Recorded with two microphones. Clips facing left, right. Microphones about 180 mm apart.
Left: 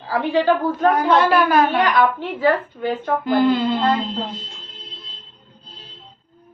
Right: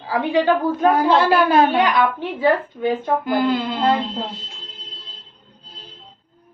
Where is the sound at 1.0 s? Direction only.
30° right (ahead or behind).